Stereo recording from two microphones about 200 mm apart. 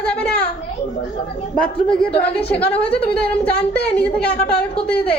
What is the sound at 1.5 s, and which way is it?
A woman's voice, 5° left (ahead or behind).